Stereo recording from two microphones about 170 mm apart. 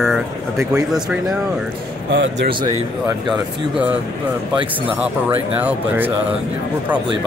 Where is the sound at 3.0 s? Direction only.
5° right (ahead or behind).